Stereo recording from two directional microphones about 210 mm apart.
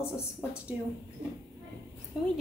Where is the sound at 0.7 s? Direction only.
10° right (ahead or behind).